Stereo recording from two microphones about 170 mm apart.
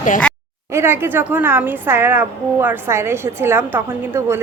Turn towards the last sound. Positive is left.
turn(degrees=-15)  # may be behind; listen again after turning